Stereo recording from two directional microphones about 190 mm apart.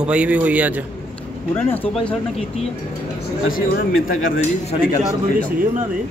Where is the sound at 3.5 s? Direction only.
50° left (ahead or behind).